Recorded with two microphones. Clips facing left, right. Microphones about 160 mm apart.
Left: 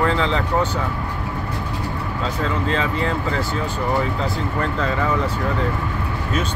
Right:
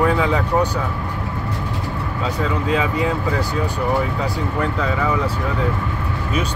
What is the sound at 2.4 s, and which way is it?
Speech, 10° right (ahead or behind).